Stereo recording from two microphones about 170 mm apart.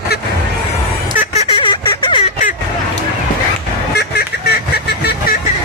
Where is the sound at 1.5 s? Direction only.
30° left (ahead or behind).